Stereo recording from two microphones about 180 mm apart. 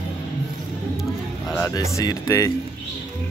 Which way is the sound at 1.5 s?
15° left (ahead or behind).